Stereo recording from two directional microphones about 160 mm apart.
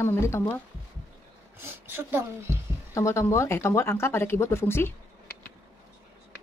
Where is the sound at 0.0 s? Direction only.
15° left (ahead or behind).